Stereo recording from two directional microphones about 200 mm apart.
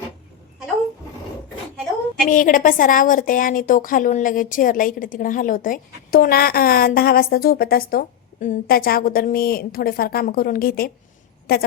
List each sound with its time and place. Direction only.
2.2 s a woman's voice: 40° left (ahead or behind)